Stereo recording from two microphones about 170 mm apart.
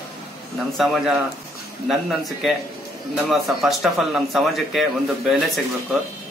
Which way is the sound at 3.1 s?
Centre (ahead or behind).